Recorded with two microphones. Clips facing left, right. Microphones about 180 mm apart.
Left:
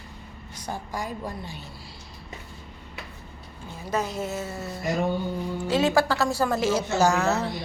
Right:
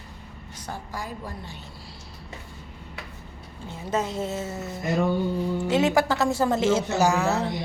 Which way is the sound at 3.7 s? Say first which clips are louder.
Right 1 dB; 25° right (ahead or behind).